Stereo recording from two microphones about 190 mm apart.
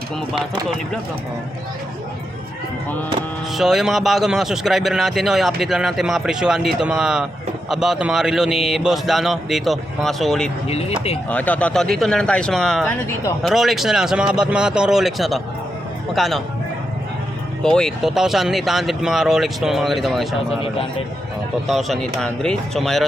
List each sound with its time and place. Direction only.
3.5 s a man's voice: centre (ahead or behind)
10.7 s speech: 35° left (ahead or behind)
11.3 s a man's voice: 10° left (ahead or behind)
17.6 s a man's voice: 5° left (ahead or behind)
21.7 s a man's voice: centre (ahead or behind)